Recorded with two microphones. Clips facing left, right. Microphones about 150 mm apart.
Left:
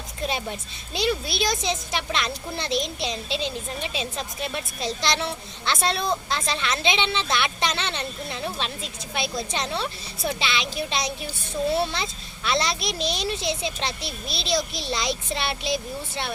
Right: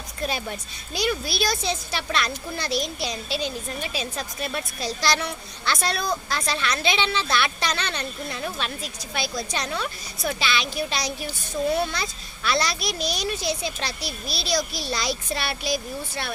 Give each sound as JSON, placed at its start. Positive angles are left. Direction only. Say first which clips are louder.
{"t": 0.2, "sound": "music", "louder": "even", "side_deg": 20}
{"t": 0.9, "sound": "speech", "louder": "left 1 dB", "side_deg": 25}